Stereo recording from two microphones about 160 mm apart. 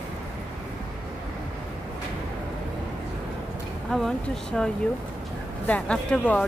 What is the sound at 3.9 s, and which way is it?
Speech, 5° left (ahead or behind).